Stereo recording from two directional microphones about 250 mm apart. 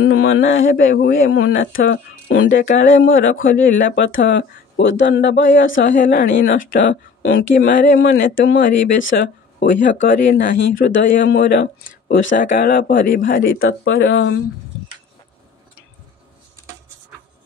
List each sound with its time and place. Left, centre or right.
0.0 s speech: left
0.7 s speech: left
1.2 s speech: left
10.8 s speech: left
13.6 s speech: left